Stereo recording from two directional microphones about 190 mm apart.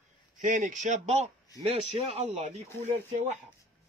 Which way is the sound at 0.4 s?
40° right (ahead or behind).